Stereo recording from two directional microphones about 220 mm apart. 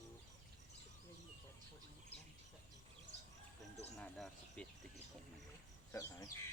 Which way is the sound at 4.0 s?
Centre (ahead or behind).